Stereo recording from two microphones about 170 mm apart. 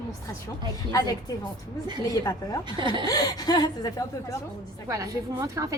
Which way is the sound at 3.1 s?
20° left (ahead or behind).